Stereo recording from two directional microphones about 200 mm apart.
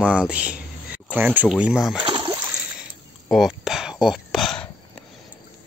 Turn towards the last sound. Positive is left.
turn(degrees=0)  # may be behind; listen again after turning